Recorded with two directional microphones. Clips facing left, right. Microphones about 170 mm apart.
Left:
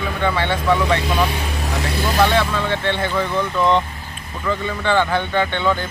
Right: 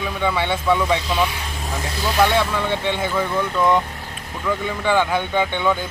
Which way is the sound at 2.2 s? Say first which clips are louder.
Even; 10° right (ahead or behind).